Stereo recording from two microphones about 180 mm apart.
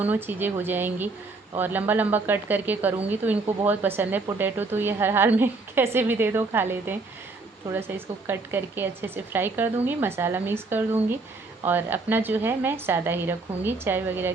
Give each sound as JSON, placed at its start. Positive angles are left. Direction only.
{"t": 0.0, "sound": "speech", "side_deg": -10}